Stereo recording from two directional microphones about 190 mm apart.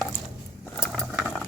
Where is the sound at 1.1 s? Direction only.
5° right (ahead or behind).